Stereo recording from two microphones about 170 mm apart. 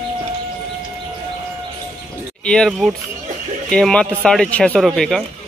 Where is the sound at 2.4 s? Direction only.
5° left (ahead or behind).